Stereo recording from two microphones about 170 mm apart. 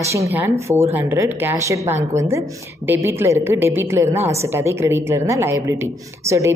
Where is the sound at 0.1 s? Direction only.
15° right (ahead or behind).